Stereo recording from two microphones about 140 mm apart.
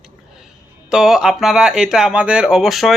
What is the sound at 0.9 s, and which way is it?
Speech, 5° right (ahead or behind).